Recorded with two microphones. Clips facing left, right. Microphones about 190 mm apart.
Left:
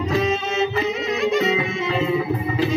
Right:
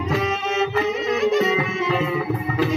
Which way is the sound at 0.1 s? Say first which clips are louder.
Left 1 dB; 25° left (ahead or behind).